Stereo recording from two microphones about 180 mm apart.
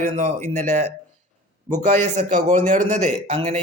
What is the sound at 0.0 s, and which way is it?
A man's voice, 40° right (ahead or behind).